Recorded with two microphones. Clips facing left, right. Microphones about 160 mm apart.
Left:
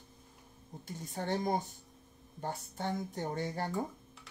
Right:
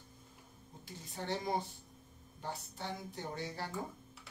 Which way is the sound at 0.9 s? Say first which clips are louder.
Left 4 dB; 50° left (ahead or behind).